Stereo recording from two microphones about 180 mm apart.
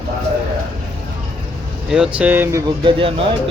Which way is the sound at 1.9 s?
5° right (ahead or behind).